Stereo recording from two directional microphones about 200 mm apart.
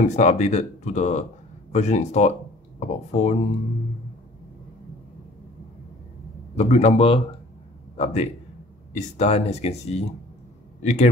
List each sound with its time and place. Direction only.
0.0 s speech: 35° left (ahead or behind)
6.6 s speech: 30° left (ahead or behind)